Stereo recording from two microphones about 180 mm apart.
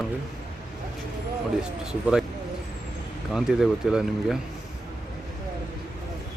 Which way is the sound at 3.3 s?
Centre (ahead or behind).